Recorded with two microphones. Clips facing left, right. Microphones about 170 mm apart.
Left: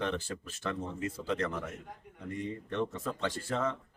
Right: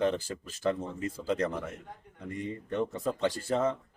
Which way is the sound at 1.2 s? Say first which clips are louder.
Right 4 dB; 40° right (ahead or behind).